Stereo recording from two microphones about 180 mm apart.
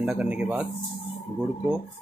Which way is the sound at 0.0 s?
5° right (ahead or behind).